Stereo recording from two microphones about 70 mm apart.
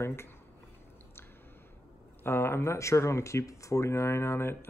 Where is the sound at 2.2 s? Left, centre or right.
Left.